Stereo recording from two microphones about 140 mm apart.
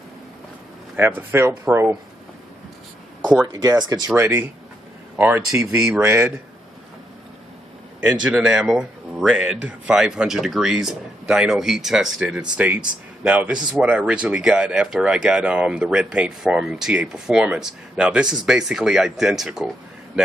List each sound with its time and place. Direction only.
0.9 s speech: 15° right (ahead or behind)
3.5 s speech: 30° right (ahead or behind)
4.1 s speech: 15° right (ahead or behind)
8.0 s speech: 5° right (ahead or behind)